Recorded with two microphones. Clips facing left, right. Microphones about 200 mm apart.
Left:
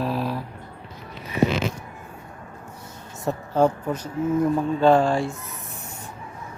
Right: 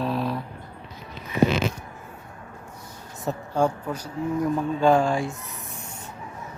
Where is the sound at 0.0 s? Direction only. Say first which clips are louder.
Even; centre (ahead or behind).